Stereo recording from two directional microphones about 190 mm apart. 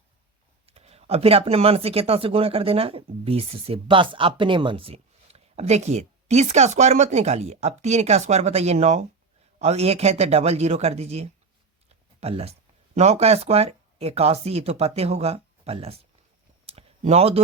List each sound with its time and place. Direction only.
0.7 s speech: 35° right (ahead or behind)
16.6 s clicking: 35° right (ahead or behind)